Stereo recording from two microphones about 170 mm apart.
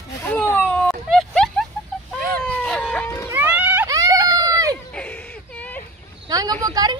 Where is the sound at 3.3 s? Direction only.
10° right (ahead or behind).